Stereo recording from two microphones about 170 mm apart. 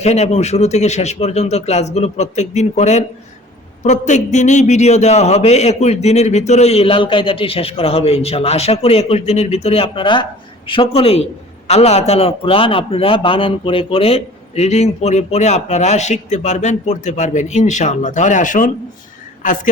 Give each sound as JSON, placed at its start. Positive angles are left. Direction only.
{"t": 0.0, "sound": "a man's voice", "side_deg": 40}